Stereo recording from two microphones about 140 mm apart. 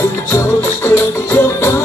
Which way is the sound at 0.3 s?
15° left (ahead or behind).